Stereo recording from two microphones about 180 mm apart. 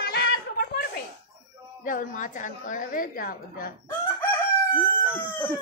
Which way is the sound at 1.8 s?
50° left (ahead or behind).